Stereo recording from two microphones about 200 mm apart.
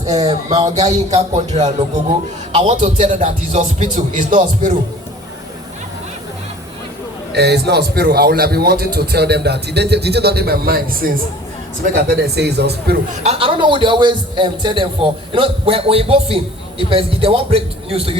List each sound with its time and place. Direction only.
0.0 s a man's voice: 20° right (ahead or behind)
0.9 s speech: 35° right (ahead or behind)
7.3 s a man's voice: 55° right (ahead or behind)
13.2 s a man's voice: 25° right (ahead or behind)